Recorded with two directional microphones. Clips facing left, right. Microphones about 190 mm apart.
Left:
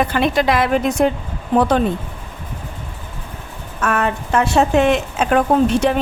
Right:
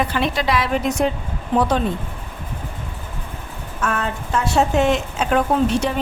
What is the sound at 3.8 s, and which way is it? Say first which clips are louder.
A woman's voice: left 4 dB; 60° left (ahead or behind).